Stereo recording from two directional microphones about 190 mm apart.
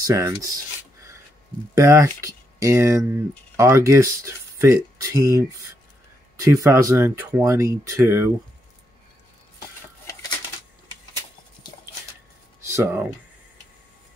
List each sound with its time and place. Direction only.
0.0 s speech: 15° right (ahead or behind)
1.8 s speech: 15° right (ahead or behind)
12.6 s speech: 15° right (ahead or behind)